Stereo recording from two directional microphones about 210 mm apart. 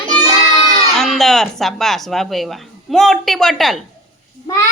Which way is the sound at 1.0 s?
Centre (ahead or behind).